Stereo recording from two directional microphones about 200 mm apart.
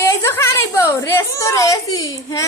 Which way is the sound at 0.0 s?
15° left (ahead or behind).